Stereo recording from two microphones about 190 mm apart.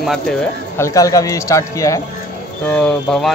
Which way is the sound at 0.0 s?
Centre (ahead or behind).